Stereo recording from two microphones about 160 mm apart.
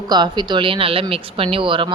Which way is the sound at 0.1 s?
25° right (ahead or behind).